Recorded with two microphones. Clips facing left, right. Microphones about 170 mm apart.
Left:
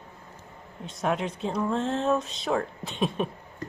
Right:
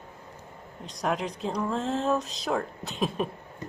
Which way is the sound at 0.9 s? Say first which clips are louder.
Left 1 dB; centre (ahead or behind).